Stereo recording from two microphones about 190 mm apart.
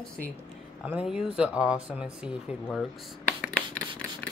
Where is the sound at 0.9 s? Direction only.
5° right (ahead or behind).